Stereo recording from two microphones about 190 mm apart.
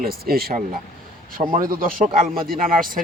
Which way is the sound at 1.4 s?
40° right (ahead or behind).